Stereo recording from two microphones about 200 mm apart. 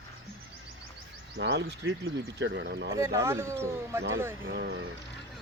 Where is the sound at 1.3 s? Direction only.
60° right (ahead or behind).